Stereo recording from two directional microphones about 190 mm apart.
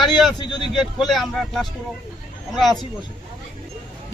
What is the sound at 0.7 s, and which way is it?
Speech, centre (ahead or behind).